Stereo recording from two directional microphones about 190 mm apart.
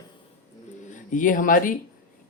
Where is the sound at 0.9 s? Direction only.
45° left (ahead or behind).